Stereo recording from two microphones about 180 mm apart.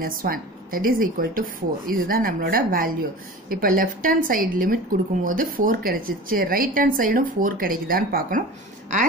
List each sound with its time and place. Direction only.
0.0 s a woman's voice: 50° right (ahead or behind)